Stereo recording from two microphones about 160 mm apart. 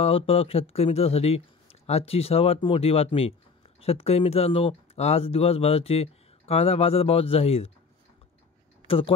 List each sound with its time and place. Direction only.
0.0 s speech: 35° left (ahead or behind)
8.8 s speech: 35° left (ahead or behind)